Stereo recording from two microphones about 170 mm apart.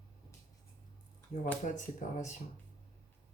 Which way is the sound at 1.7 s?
45° left (ahead or behind).